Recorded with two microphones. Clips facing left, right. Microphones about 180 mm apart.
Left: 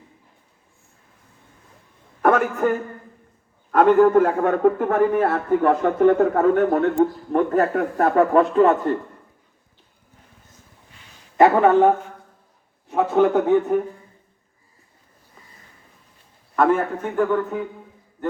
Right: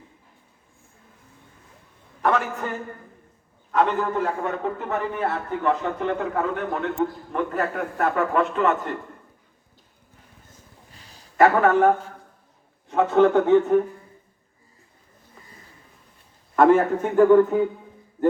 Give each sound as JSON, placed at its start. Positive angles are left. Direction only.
{"t": 2.2, "sound": "a man's voice", "side_deg": 50}
{"t": 10.9, "sound": "a sound", "side_deg": -35}
{"t": 11.3, "sound": "a man's voice", "side_deg": 20}
{"t": 16.6, "sound": "a man's voice", "side_deg": -15}